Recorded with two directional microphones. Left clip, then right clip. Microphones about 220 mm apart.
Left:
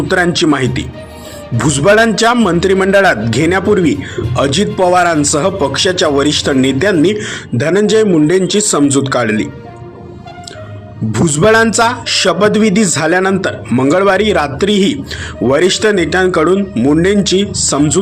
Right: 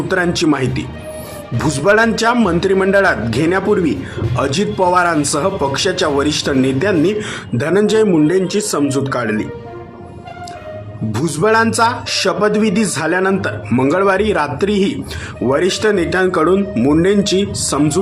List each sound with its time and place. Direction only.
0.1 s a man's voice: 10° left (ahead or behind)
11.1 s a man's voice: 10° left (ahead or behind)